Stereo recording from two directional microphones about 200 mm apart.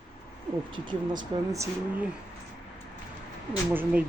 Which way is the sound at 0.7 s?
25° right (ahead or behind).